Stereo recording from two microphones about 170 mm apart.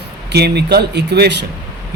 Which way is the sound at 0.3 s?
75° right (ahead or behind).